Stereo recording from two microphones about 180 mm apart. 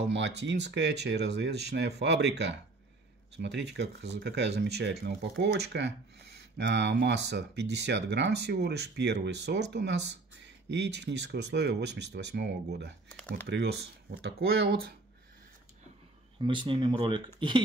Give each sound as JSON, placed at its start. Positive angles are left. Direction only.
{"t": 0.4, "sound": "speech", "side_deg": -75}
{"t": 16.3, "sound": "speech", "side_deg": -30}